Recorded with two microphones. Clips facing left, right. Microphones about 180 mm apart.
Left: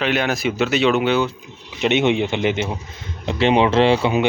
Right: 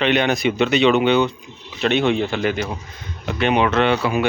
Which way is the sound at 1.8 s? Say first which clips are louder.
Left 1 dB; 20° left (ahead or behind).